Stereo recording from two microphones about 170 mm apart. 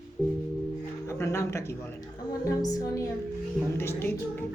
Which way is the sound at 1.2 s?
15° left (ahead or behind).